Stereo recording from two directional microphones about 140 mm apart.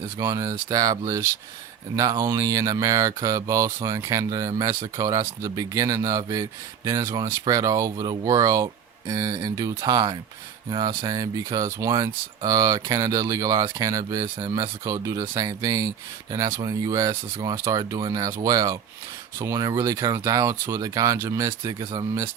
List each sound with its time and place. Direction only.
0.2 s speech: 20° right (ahead or behind)